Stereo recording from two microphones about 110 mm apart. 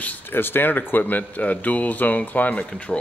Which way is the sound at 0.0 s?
15° left (ahead or behind).